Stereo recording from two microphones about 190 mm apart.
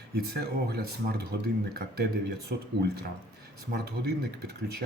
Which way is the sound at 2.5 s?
55° right (ahead or behind).